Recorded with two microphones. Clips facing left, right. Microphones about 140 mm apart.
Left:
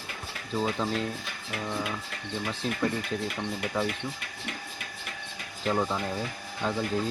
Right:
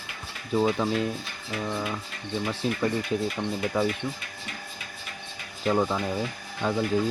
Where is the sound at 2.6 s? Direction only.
5° right (ahead or behind).